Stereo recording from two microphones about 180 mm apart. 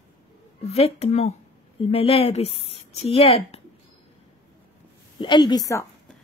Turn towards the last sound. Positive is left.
turn(degrees=20)  # may be behind; listen again after turning